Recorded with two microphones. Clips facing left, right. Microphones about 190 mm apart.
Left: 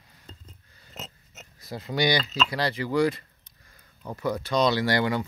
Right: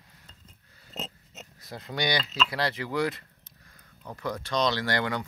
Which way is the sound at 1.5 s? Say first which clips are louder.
Left 5 dB; 5° left (ahead or behind).